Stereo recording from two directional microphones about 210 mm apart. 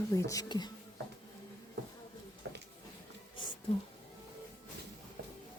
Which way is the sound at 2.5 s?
55° right (ahead or behind).